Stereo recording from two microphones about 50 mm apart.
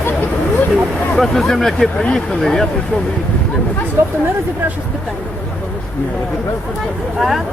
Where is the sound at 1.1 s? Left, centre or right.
Centre.